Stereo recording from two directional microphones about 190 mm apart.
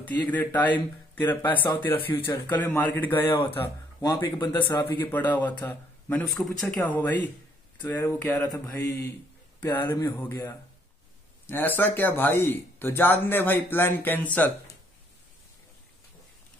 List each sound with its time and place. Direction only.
0.3 s speech: 10° left (ahead or behind)
8.5 s mantra: 20° left (ahead or behind)
9.6 s speech: 10° left (ahead or behind)